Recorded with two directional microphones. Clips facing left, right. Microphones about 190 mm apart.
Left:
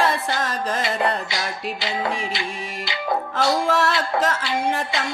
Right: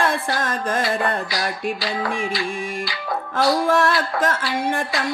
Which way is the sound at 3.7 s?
50° right (ahead or behind).